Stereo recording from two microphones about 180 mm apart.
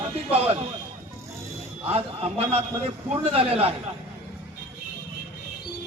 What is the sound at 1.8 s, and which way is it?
A man's voice, 35° right (ahead or behind).